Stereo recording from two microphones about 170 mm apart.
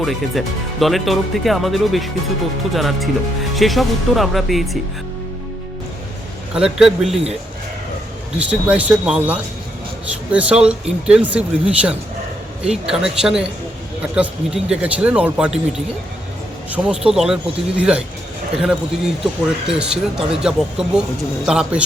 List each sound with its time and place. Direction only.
0.0 s speech: centre (ahead or behind)
6.5 s speech: 5° right (ahead or behind)
8.4 s a man's voice: 10° right (ahead or behind)
16.7 s speech: 5° right (ahead or behind)